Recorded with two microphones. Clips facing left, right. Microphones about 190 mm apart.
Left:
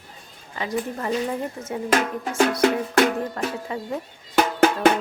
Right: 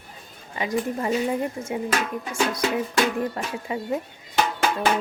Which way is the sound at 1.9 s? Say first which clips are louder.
Left 4 dB; 55° left (ahead or behind).